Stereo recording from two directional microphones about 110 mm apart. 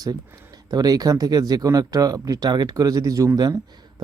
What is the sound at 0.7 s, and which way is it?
Speech, 35° right (ahead or behind).